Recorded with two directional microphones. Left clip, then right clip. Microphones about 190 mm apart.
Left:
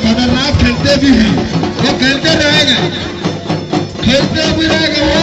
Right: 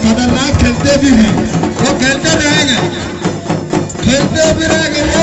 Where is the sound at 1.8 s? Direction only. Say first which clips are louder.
Even; 75° right (ahead or behind).